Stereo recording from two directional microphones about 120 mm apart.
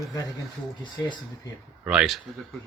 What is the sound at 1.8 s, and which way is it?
Speech, 5° right (ahead or behind).